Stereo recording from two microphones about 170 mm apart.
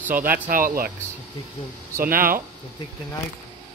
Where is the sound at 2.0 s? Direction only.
60° right (ahead or behind).